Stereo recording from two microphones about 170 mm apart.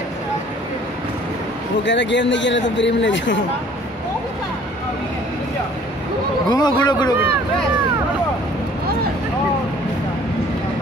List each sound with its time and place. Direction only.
1.9 s a man's voice: 90° left
6.5 s a man's voice: 25° left (ahead or behind)